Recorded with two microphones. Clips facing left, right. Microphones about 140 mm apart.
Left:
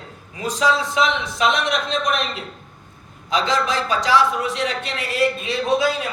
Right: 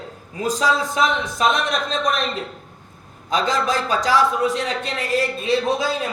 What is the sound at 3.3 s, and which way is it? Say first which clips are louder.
A man's voice: even; 45° right (ahead or behind).